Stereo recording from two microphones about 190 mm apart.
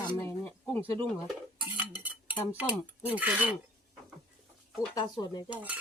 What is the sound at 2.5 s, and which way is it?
Speech, 5° right (ahead or behind).